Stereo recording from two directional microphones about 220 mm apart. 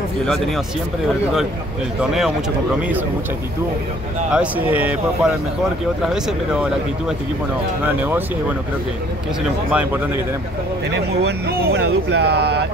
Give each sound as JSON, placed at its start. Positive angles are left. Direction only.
{"t": 2.0, "sound": "speech", "side_deg": -5}
{"t": 4.3, "sound": "speech", "side_deg": -5}
{"t": 9.7, "sound": "speech", "side_deg": -10}
{"t": 10.9, "sound": "speech", "side_deg": -50}